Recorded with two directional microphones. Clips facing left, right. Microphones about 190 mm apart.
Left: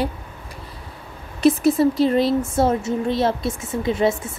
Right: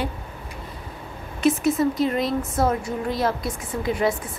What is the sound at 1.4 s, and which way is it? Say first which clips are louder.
A woman's voice: left 4 dB; 35° left (ahead or behind).